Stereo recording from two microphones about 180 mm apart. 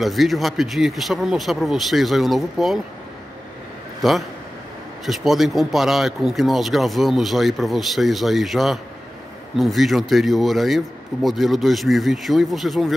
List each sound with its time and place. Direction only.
0.0 s speech: centre (ahead or behind)
4.0 s speech: centre (ahead or behind)